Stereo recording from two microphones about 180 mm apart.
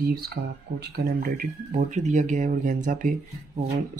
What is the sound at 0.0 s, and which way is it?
Speech, 60° right (ahead or behind).